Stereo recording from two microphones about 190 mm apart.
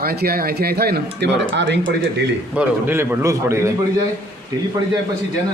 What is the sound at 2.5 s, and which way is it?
A man's voice, 10° right (ahead or behind).